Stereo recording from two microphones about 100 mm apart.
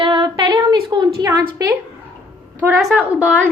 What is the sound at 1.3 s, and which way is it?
Speech, 35° right (ahead or behind).